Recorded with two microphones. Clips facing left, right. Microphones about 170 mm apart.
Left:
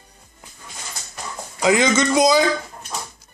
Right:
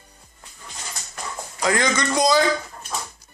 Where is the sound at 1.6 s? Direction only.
20° left (ahead or behind).